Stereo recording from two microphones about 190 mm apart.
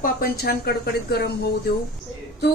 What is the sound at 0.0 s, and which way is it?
Speech, 50° left (ahead or behind).